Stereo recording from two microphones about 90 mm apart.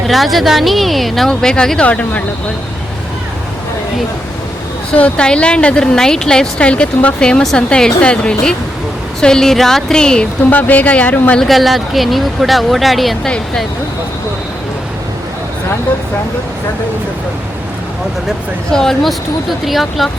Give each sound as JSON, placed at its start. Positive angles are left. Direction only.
{"t": 0.1, "sound": "a woman's voice", "side_deg": 0}
{"t": 4.9, "sound": "a woman's voice", "side_deg": 15}
{"t": 11.3, "sound": "a woman's voice", "side_deg": 0}
{"t": 13.3, "sound": "a woman's voice", "side_deg": 10}
{"t": 18.7, "sound": "a woman's voice", "side_deg": 5}